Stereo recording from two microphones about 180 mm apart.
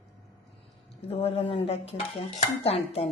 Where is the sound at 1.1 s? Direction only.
35° left (ahead or behind).